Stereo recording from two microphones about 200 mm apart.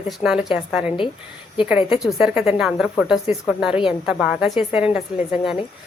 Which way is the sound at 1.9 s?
5° right (ahead or behind).